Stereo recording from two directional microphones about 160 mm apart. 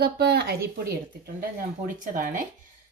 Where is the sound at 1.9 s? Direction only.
55° right (ahead or behind).